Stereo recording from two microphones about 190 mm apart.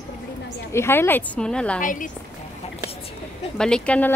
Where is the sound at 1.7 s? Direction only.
45° left (ahead or behind).